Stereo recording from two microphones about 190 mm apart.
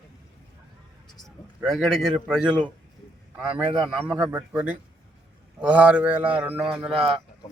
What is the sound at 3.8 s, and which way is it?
Speech, centre (ahead or behind).